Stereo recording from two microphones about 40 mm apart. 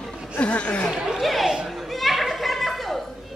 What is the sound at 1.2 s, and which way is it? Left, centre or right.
Chatter, centre.